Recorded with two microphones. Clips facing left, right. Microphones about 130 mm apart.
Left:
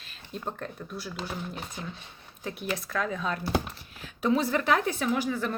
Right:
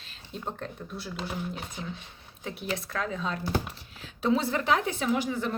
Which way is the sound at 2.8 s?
30° right (ahead or behind).